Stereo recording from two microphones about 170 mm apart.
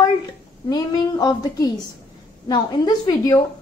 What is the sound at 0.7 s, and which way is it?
A woman's voice, 25° left (ahead or behind).